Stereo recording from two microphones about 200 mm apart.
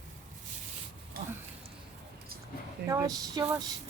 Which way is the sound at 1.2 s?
50° right (ahead or behind).